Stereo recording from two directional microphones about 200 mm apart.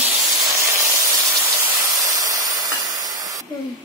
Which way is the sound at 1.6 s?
15° right (ahead or behind).